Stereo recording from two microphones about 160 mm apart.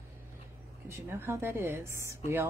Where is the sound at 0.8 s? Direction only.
15° right (ahead or behind).